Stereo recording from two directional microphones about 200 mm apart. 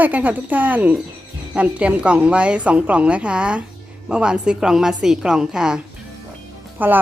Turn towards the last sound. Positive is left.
turn(degrees=-10)  # may be behind; listen again after turning